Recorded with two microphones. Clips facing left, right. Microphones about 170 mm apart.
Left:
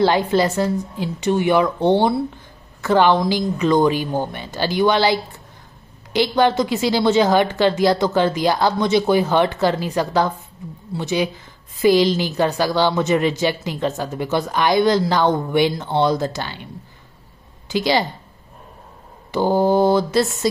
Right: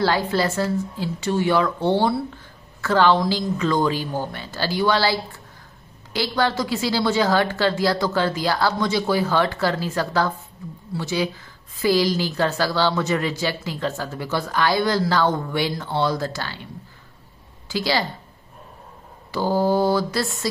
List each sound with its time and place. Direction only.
0.0 s a woman's voice: 20° left (ahead or behind)
17.6 s speech: 20° left (ahead or behind)
19.3 s a woman's voice: 20° left (ahead or behind)